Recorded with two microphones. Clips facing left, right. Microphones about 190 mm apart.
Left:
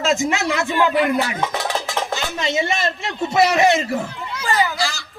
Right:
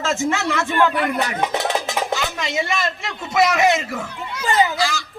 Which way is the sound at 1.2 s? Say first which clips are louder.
Right 1 dB; 20° right (ahead or behind).